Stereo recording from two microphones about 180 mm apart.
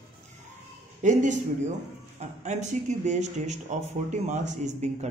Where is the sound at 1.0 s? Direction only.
45° right (ahead or behind).